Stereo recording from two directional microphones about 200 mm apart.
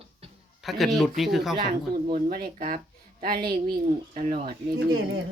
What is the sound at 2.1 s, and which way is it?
Speech, 45° right (ahead or behind).